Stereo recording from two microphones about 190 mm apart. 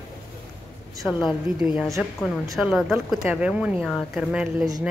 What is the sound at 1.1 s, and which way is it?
Speech, 25° left (ahead or behind).